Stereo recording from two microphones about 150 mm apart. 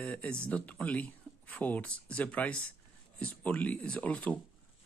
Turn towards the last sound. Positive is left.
turn(degrees=10)  # may be behind; listen again after turning